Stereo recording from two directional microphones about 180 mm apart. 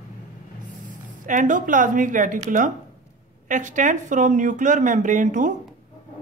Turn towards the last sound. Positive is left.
turn(degrees=-45)  # may be behind; listen again after turning